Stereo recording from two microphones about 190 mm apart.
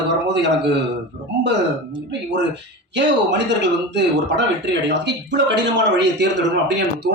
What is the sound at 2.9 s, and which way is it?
A man's voice, 70° right (ahead or behind).